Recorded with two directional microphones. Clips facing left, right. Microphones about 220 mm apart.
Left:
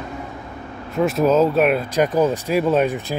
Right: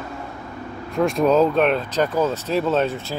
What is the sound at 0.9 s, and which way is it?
Speech, 5° left (ahead or behind).